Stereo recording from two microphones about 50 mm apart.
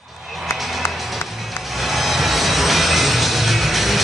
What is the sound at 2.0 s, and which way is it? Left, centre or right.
Music, centre.